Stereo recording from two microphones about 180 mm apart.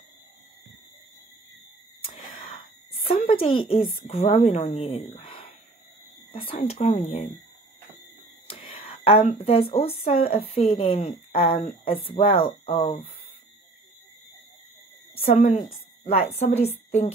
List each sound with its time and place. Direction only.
2.3 s a woman's voice: 35° left (ahead or behind)
6.5 s speech: 35° left (ahead or behind)
8.5 s whispering: 30° left (ahead or behind)
9.4 s speech: 35° left (ahead or behind)
15.1 s a woman's voice: 30° left (ahead or behind)